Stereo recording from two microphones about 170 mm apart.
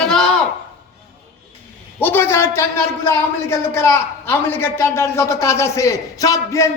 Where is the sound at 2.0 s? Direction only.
10° left (ahead or behind).